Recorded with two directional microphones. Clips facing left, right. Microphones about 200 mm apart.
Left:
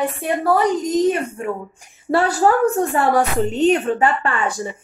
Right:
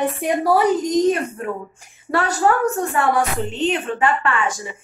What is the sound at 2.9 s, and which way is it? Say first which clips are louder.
A woman's voice: left 2 dB; 40° left (ahead or behind).